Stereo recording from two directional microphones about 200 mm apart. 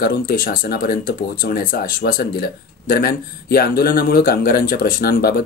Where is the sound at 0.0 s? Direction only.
45° left (ahead or behind).